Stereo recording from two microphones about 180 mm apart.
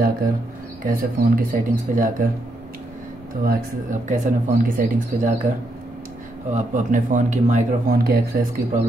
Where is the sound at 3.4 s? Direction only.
45° right (ahead or behind).